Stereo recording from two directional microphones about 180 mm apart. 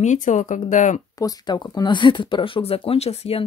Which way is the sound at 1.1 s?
20° left (ahead or behind).